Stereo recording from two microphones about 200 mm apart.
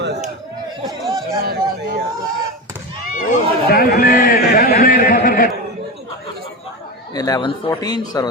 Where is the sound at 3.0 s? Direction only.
45° left (ahead or behind).